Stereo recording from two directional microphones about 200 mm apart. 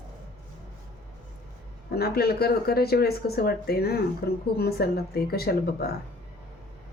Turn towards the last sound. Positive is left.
turn(degrees=50)  # may be behind; listen again after turning